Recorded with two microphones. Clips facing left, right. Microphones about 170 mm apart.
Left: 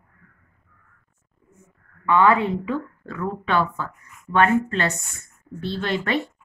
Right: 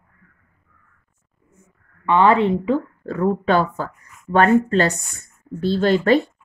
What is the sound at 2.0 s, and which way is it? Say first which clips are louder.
A woman's voice: right 3 dB; 25° right (ahead or behind).